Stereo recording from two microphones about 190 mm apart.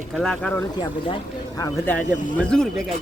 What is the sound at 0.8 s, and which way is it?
Speech, 25° left (ahead or behind).